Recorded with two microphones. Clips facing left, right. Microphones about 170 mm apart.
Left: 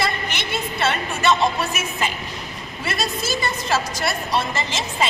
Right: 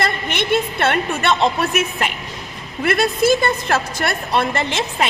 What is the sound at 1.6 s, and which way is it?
A woman's voice, 60° right (ahead or behind).